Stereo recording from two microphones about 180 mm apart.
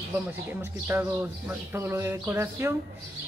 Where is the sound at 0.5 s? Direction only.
10° right (ahead or behind).